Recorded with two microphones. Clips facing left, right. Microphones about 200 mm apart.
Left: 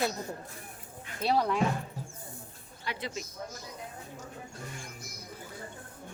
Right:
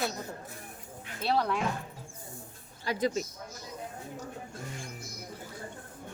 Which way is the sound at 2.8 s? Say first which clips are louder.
Right 8 dB; 40° right (ahead or behind).